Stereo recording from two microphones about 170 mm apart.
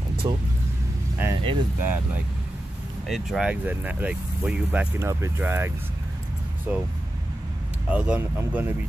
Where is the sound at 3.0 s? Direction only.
Centre (ahead or behind).